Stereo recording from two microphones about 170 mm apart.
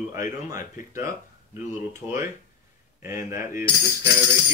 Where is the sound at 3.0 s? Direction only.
15° right (ahead or behind).